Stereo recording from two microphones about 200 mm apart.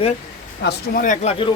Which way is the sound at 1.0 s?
35° left (ahead or behind).